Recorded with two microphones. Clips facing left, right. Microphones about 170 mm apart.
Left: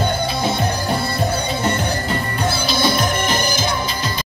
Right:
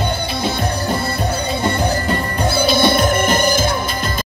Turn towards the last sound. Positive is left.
turn(degrees=-55)  # may be behind; listen again after turning